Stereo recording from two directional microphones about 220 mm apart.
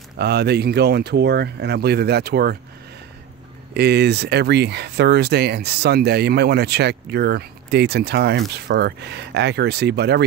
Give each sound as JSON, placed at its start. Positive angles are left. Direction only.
{"t": 0.2, "sound": "speech", "side_deg": -50}
{"t": 3.7, "sound": "speech", "side_deg": -50}